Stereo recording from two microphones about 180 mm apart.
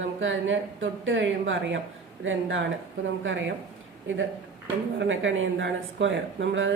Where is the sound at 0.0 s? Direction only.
90° right.